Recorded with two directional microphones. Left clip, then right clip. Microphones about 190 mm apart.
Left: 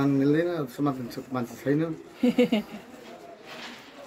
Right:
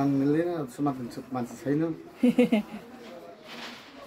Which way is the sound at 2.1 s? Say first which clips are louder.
Even; 15° right (ahead or behind).